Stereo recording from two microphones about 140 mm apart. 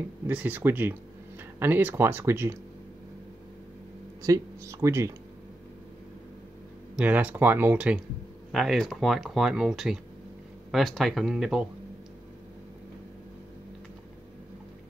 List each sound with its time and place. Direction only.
0.3 s speech: 10° right (ahead or behind)
4.2 s speech: 25° right (ahead or behind)
7.0 s speech: 10° right (ahead or behind)